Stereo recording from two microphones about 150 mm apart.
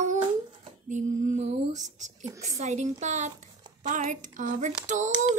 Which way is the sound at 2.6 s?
50° right (ahead or behind).